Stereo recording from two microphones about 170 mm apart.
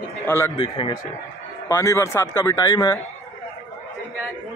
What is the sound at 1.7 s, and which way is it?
Speech, 15° left (ahead or behind).